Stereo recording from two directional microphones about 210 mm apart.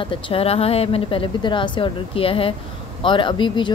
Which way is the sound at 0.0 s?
25° left (ahead or behind).